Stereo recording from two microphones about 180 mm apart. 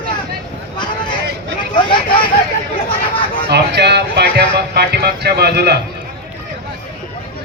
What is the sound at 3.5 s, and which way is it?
A man's voice, 65° right (ahead or behind).